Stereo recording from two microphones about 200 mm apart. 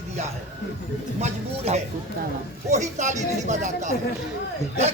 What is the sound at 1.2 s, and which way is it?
Speech, 35° right (ahead or behind).